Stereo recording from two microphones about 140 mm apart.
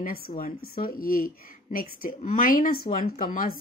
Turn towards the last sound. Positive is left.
turn(degrees=90)